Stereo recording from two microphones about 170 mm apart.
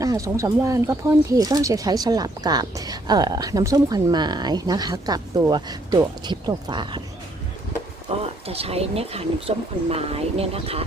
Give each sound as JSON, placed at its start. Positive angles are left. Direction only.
{"t": 0.0, "sound": "speech", "side_deg": -20}
{"t": 8.4, "sound": "speech", "side_deg": -35}